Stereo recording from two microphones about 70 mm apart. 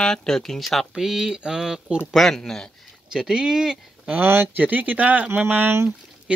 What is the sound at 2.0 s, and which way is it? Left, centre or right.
Speech, centre.